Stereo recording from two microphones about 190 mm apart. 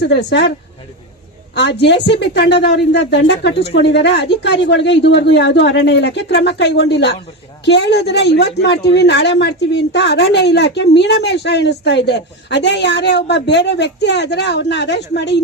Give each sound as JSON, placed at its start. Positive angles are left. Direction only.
{"t": 0.0, "sound": "a woman's voice", "side_deg": 65}
{"t": 1.5, "sound": "a woman's voice", "side_deg": 65}